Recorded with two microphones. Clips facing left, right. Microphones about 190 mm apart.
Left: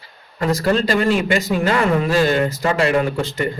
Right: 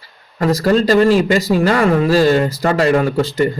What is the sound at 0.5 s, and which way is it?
Speech, 40° right (ahead or behind).